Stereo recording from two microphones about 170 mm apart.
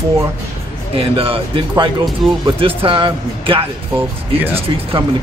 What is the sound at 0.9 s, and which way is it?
Speech, 35° right (ahead or behind).